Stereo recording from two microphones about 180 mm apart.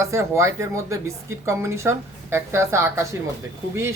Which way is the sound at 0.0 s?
15° right (ahead or behind).